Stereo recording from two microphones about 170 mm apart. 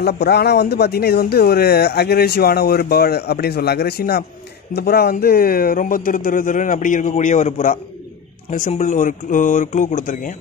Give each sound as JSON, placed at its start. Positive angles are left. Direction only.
{"t": 0.0, "sound": "a man's voice", "side_deg": 70}